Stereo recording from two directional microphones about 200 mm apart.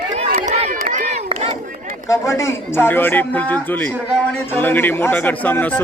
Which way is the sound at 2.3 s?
10° left (ahead or behind).